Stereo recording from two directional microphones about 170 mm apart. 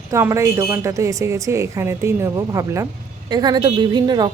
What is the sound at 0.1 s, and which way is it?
A woman's voice, 20° right (ahead or behind).